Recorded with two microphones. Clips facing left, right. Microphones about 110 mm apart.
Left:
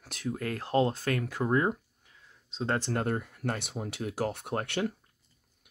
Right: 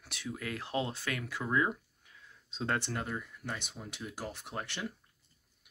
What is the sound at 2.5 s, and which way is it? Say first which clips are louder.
Speech: left 3 dB; 30° left (ahead or behind).